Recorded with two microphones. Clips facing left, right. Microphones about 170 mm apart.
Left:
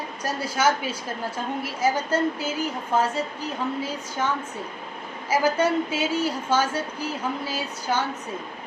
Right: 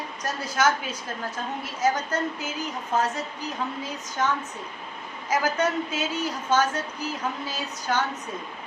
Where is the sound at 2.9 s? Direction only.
30° left (ahead or behind).